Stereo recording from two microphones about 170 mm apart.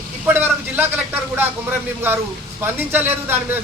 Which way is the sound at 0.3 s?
10° right (ahead or behind).